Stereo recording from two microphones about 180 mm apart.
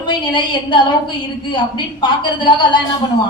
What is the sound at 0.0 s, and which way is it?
A woman's voice, 25° left (ahead or behind).